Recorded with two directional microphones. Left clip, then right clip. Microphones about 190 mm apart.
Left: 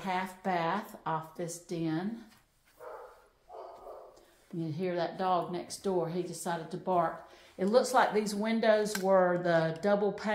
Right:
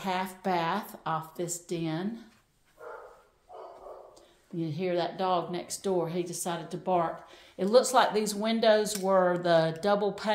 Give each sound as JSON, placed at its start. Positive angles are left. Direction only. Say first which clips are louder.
{"t": 0.0, "sound": "a woman's voice", "louder": "right 2 dB", "side_deg": -30}
{"t": 4.6, "sound": "a woman's voice", "louder": "right 3 dB", "side_deg": -30}